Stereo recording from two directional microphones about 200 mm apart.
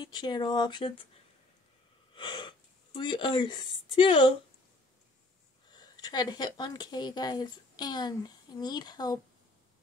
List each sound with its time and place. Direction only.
0.0 s a woman's voice: 20° left (ahead or behind)
2.1 s speech: 25° left (ahead or behind)
5.7 s a woman's voice: 20° left (ahead or behind)